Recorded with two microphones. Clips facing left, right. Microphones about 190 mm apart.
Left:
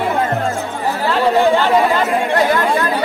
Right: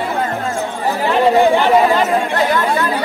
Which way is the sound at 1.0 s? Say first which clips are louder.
Right 2 dB; 15° right (ahead or behind).